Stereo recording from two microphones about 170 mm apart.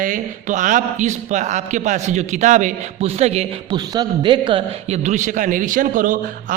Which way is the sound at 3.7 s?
25° right (ahead or behind).